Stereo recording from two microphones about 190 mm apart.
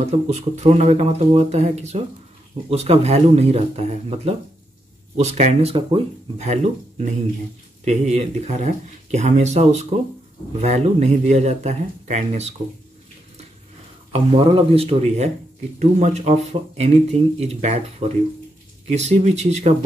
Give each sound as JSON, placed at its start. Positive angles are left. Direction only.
{"t": 0.0, "sound": "speech", "side_deg": -35}
{"t": 14.1, "sound": "speech", "side_deg": -30}